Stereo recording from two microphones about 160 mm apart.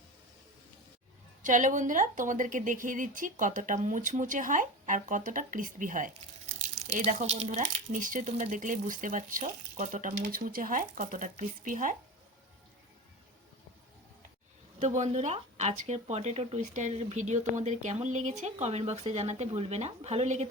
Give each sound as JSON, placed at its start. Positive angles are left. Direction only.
{"t": 1.4, "sound": "speech", "side_deg": -55}
{"t": 7.0, "sound": "speech", "side_deg": -45}
{"t": 14.8, "sound": "speech", "side_deg": -45}